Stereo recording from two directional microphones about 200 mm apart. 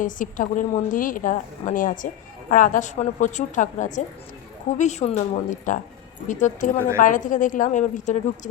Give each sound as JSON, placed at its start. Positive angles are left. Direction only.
{"t": 0.0, "sound": "a woman's voice", "side_deg": 40}